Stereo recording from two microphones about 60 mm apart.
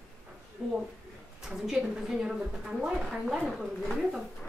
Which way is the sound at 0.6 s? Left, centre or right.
Centre.